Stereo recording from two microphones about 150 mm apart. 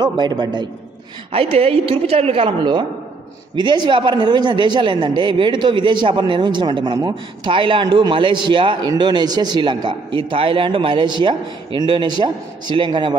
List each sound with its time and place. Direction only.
0.0 s a man's voice: 30° right (ahead or behind)
1.3 s a man's voice: 40° right (ahead or behind)